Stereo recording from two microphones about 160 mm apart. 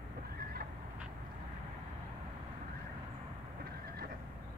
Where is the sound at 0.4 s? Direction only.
70° right (ahead or behind).